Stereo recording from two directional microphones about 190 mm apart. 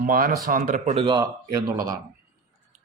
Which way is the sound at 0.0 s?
50° right (ahead or behind).